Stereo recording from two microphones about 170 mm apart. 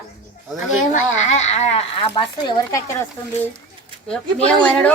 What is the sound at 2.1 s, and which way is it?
Speech, 25° left (ahead or behind).